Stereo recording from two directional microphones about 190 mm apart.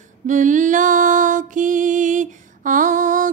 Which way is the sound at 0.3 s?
40° right (ahead or behind).